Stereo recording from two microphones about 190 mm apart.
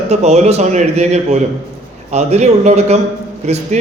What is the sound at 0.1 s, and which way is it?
A man's voice, 35° right (ahead or behind).